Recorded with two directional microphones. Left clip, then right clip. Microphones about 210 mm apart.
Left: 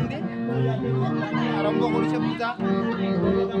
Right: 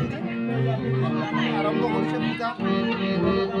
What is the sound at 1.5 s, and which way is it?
Music, 35° left (ahead or behind).